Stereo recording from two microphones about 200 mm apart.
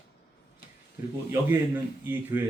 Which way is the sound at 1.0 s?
15° right (ahead or behind).